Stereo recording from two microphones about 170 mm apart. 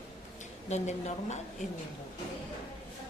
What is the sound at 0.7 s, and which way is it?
Speech, 40° left (ahead or behind).